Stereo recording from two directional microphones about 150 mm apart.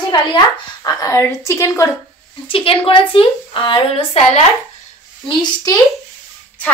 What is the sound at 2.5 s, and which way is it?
A woman's voice, 35° left (ahead or behind).